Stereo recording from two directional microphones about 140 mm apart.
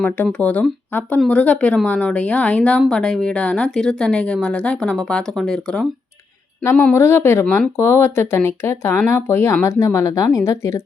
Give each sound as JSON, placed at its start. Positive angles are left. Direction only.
{"t": 0.0, "sound": "a woman's voice", "side_deg": 10}
{"t": 6.9, "sound": "a woman's voice", "side_deg": 20}
{"t": 7.4, "sound": "speech", "side_deg": 5}